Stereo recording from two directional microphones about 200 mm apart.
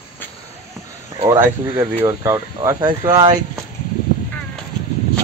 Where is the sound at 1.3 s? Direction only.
15° right (ahead or behind).